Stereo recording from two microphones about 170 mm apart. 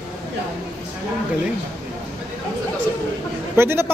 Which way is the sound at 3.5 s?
15° right (ahead or behind).